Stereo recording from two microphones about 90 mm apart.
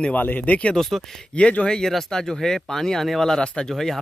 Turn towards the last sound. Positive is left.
turn(degrees=0)  # may be behind; listen again after turning